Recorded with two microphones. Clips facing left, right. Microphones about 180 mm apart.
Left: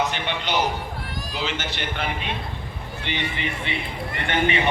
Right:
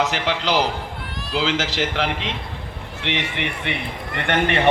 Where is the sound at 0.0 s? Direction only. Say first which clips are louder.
Right 4 dB; 90° right.